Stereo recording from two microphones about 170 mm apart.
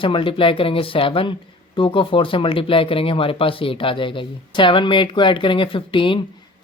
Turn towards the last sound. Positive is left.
turn(degrees=30)  # may be behind; listen again after turning